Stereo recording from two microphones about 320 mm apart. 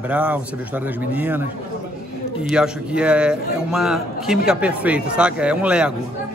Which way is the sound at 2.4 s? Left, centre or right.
Centre.